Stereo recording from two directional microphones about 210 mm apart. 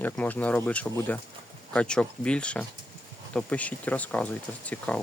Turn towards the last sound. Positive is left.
turn(degrees=5)  # may be behind; listen again after turning